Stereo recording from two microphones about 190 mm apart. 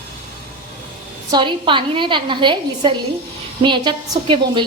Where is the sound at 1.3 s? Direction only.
25° right (ahead or behind).